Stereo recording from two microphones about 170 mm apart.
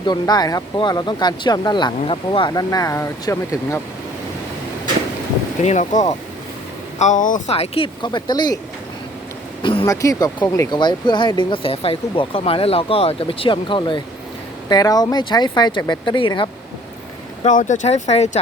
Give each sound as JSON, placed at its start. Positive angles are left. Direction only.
{"t": 0.0, "sound": "speech", "side_deg": 25}
{"t": 5.6, "sound": "speech", "side_deg": 45}
{"t": 9.8, "sound": "speech", "side_deg": 20}
{"t": 17.4, "sound": "speech", "side_deg": 50}